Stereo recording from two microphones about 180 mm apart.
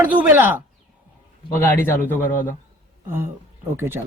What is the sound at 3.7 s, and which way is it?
Speech, 15° right (ahead or behind).